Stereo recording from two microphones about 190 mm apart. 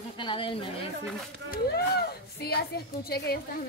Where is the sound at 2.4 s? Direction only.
55° left (ahead or behind).